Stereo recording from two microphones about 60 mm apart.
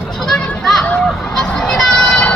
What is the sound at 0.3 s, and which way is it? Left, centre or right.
Children playing, centre.